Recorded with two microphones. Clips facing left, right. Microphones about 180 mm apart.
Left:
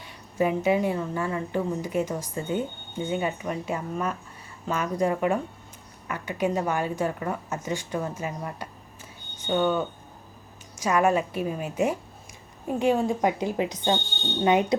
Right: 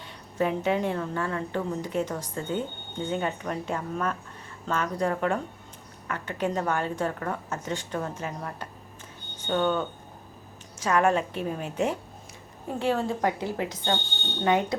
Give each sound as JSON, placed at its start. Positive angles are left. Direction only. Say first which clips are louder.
{"t": 0.0, "sound": "speech", "louder": "left 2 dB", "side_deg": 10}